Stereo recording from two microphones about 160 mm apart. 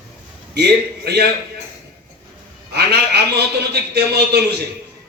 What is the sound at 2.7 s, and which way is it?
A man's voice, 90° right.